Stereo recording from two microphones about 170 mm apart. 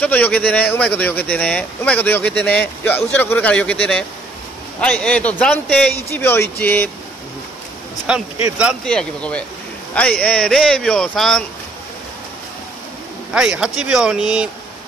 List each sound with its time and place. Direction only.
0.0 s speech: 10° left (ahead or behind)
8.1 s a man's voice: 5° right (ahead or behind)
8.8 s speech: 5° left (ahead or behind)
13.3 s speech: 5° right (ahead or behind)